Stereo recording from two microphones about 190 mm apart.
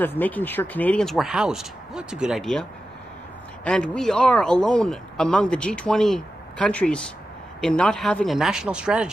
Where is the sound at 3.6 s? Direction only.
5° left (ahead or behind).